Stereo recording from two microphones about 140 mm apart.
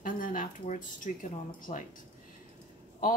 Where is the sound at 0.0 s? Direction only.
75° left (ahead or behind).